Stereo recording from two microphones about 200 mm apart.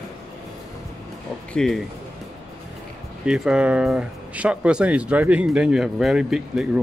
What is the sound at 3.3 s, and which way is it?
Speech, 5° right (ahead or behind).